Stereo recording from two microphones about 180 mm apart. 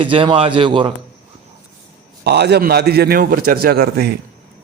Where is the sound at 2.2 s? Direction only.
65° right (ahead or behind).